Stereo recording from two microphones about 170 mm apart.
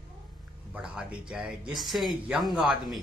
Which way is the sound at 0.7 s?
5° right (ahead or behind).